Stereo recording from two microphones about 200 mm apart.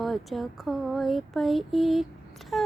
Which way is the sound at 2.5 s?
Centre (ahead or behind).